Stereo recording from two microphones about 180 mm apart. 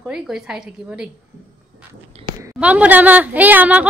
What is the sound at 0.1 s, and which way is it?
Speech, 5° right (ahead or behind).